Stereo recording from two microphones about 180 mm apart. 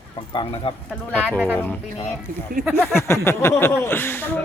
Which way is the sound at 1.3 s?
10° right (ahead or behind).